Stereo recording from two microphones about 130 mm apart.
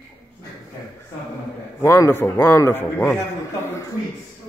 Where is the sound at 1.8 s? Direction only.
20° left (ahead or behind).